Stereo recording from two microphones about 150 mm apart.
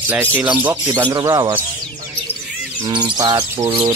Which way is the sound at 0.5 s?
10° right (ahead or behind).